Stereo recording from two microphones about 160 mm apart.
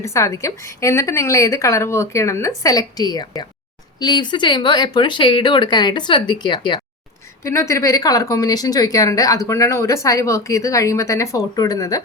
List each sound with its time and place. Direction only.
0.0 s a woman's voice: 20° left (ahead or behind)